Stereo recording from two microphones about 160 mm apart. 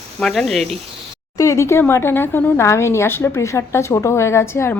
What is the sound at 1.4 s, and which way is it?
Speech, 20° left (ahead or behind).